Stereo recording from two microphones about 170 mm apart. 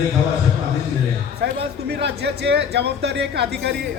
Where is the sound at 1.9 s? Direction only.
80° right.